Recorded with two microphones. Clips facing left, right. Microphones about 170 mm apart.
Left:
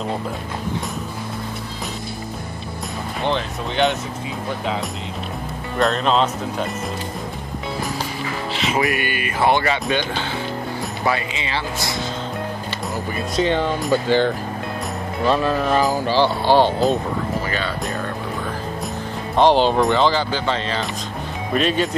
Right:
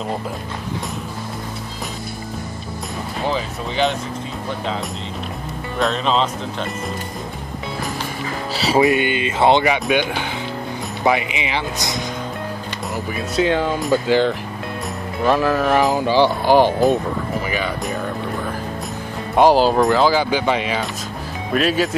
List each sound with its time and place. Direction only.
3.3 s speech: centre (ahead or behind)
5.8 s speech: centre (ahead or behind)
8.5 s music: 35° right (ahead or behind)
8.8 s speech: 20° right (ahead or behind)
13.1 s speech: 5° right (ahead or behind)
15.3 s music: 25° left (ahead or behind)
15.7 s speech: 20° right (ahead or behind)
19.3 s speech: 5° right (ahead or behind)